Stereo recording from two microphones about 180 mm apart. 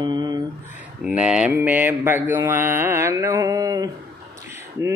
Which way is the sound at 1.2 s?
5° right (ahead or behind).